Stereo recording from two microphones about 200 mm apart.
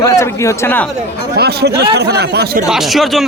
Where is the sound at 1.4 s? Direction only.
55° right (ahead or behind).